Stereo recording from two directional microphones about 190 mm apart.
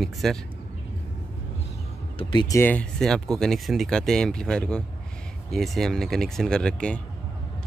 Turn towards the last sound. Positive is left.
turn(degrees=5)  # may be behind; listen again after turning